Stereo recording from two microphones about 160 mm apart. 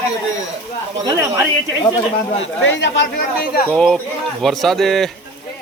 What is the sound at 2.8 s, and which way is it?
Speech, 85° left.